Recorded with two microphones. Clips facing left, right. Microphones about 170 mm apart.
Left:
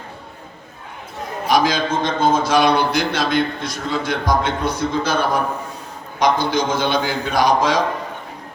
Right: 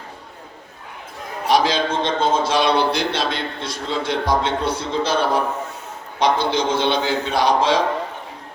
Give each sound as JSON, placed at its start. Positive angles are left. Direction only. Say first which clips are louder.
{"t": 1.5, "sound": "a man's voice", "louder": "even", "side_deg": -30}